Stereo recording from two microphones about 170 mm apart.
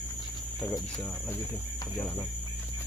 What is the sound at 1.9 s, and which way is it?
Speech, 10° left (ahead or behind).